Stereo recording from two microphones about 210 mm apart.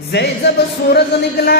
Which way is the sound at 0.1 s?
55° left (ahead or behind).